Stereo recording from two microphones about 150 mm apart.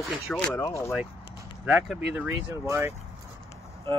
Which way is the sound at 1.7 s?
5° right (ahead or behind).